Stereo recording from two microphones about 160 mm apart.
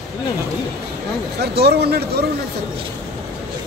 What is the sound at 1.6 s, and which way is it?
Speech, 85° right.